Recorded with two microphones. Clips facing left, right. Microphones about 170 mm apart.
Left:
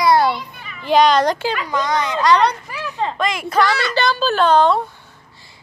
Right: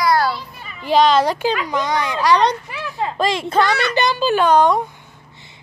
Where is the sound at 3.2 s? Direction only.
30° right (ahead or behind).